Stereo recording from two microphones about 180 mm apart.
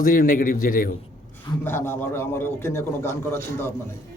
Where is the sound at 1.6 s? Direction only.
10° left (ahead or behind).